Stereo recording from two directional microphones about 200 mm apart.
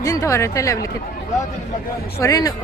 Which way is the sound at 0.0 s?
15° left (ahead or behind).